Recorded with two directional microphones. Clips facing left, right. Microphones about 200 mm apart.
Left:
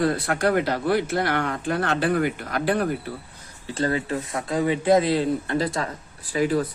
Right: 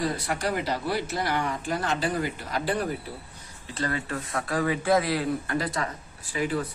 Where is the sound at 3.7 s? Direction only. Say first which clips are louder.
Left 6 dB; 30° left (ahead or behind).